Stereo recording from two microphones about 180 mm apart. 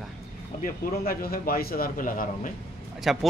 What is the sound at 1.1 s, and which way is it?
A man's voice, 55° left (ahead or behind).